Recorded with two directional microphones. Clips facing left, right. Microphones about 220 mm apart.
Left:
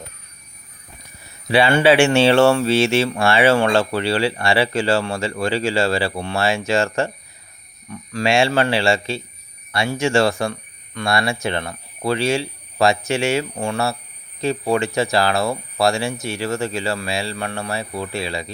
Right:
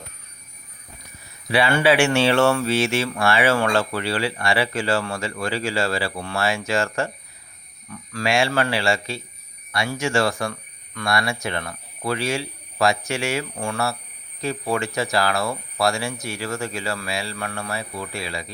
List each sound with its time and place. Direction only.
1.5 s speech: 25° left (ahead or behind)